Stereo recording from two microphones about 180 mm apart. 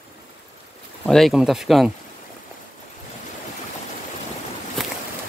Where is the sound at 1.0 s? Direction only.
Centre (ahead or behind).